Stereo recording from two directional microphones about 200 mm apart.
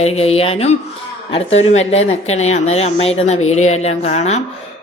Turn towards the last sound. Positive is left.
turn(degrees=35)  # may be behind; listen again after turning